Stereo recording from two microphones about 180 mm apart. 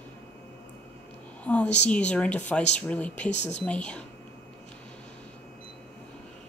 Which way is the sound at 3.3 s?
40° left (ahead or behind).